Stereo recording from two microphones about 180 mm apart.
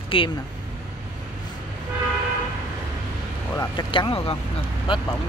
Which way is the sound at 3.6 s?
25° left (ahead or behind).